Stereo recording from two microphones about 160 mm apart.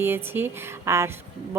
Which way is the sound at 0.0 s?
15° right (ahead or behind).